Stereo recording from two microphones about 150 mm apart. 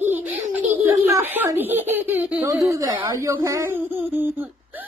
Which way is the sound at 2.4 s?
20° right (ahead or behind).